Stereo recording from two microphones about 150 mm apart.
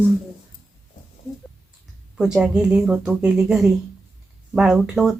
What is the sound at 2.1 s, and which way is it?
Speech, 5° right (ahead or behind).